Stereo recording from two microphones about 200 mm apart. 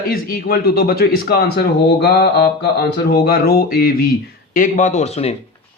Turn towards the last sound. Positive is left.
turn(degrees=30)  # may be behind; listen again after turning